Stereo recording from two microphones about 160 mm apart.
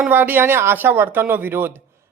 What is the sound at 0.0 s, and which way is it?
Speech, 10° right (ahead or behind).